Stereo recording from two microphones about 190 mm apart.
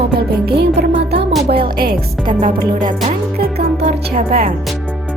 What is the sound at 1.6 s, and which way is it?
Speech, 50° right (ahead or behind).